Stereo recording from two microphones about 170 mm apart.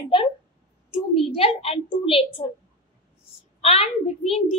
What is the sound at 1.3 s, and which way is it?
A child's voice, 35° left (ahead or behind).